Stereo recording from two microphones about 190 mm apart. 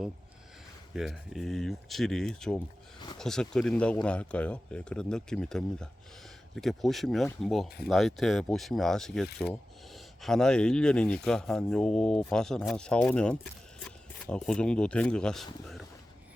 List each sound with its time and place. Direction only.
0.9 s speech: centre (ahead or behind)
9.2 s wood: 60° left (ahead or behind)
9.5 s speech: centre (ahead or behind)